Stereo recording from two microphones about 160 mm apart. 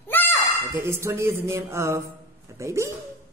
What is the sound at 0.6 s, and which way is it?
Speech, 15° right (ahead or behind).